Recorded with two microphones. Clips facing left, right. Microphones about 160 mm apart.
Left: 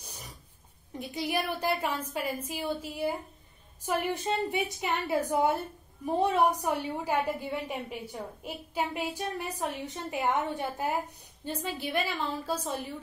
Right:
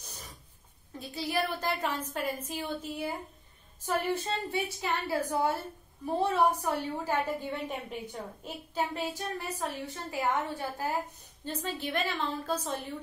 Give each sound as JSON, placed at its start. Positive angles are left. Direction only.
{"t": 0.9, "sound": "a woman's voice", "side_deg": 15}
{"t": 11.4, "sound": "a woman's voice", "side_deg": 10}